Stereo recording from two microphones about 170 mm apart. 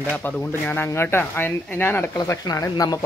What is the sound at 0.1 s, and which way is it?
Speech, 10° left (ahead or behind).